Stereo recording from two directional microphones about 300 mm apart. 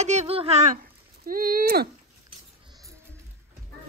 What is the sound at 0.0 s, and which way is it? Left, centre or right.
Speech, right.